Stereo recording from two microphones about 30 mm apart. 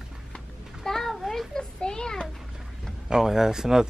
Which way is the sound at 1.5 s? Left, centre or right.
Left.